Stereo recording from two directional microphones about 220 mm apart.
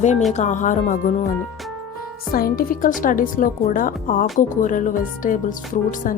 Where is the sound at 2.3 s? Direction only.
40° left (ahead or behind).